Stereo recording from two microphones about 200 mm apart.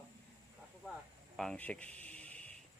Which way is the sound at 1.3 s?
5° left (ahead or behind).